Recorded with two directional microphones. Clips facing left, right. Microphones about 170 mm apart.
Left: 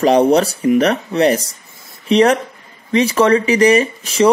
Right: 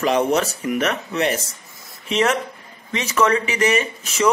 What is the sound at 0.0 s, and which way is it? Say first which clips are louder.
Speech: left 7 dB; 35° left (ahead or behind).